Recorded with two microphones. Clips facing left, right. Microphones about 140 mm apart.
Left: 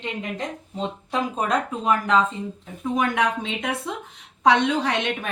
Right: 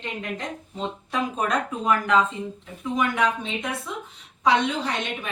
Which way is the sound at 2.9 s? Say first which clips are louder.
Left 1 dB; 65° left (ahead or behind).